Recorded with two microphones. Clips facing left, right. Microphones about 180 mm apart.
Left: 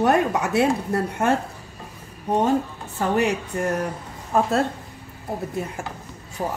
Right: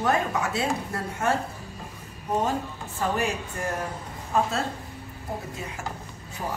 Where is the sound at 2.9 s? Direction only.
65° left (ahead or behind).